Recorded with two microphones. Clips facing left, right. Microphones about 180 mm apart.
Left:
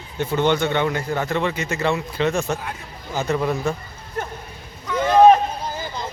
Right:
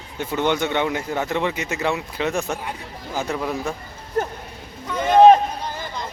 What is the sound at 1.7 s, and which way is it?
Speech, 5° right (ahead or behind).